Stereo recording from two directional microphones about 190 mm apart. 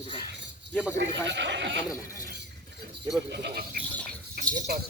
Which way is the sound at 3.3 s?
60° right (ahead or behind).